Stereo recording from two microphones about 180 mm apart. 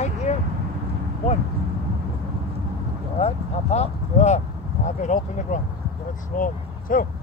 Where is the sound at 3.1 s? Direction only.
35° left (ahead or behind).